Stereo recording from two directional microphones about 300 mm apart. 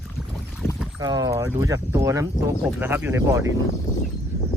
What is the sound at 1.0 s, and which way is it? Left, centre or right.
Speech, centre.